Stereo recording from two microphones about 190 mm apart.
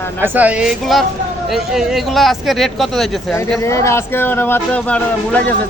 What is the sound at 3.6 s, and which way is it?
Speech, 15° left (ahead or behind).